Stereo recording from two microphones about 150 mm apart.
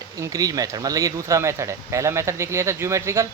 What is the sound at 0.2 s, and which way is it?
Speech, 25° right (ahead or behind).